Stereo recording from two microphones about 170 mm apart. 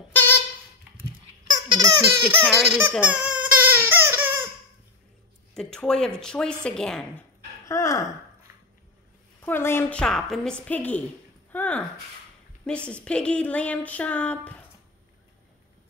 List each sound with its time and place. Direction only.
0.1 s a sound: 10° left (ahead or behind)
1.7 s baby laughter: 25° right (ahead or behind)
2.2 s speech: 5° left (ahead or behind)
3.0 s a sound: 10° right (ahead or behind)
5.5 s speech: 5° left (ahead or behind)
7.6 s speech: 15° left (ahead or behind)
9.4 s speech: 15° left (ahead or behind)